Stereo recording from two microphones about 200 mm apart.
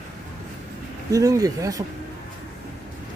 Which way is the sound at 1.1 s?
15° right (ahead or behind).